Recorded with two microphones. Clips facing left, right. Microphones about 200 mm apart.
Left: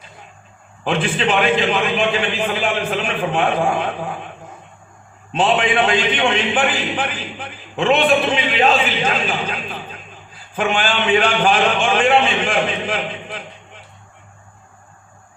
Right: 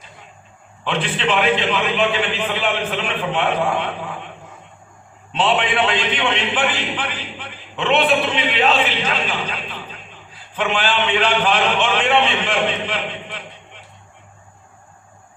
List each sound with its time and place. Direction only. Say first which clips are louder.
0.9 s a man's voice: left 2 dB; 45° left (ahead or behind)
5.3 s a man's voice: left 2 dB; 45° left (ahead or behind)